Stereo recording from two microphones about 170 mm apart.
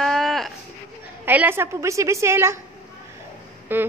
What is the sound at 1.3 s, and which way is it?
Speech, 10° right (ahead or behind).